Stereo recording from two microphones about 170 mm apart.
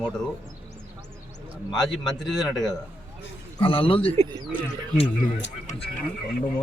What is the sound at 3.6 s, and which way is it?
Speech, 30° left (ahead or behind).